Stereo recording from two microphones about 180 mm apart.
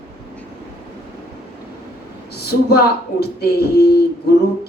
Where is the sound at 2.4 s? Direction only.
60° left (ahead or behind).